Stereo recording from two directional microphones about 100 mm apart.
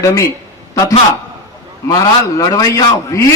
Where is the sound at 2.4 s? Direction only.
35° left (ahead or behind).